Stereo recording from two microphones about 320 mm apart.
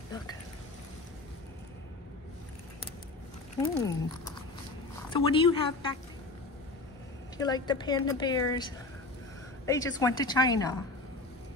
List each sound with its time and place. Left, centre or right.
3.5 s a woman's voice: centre
7.3 s a woman's voice: centre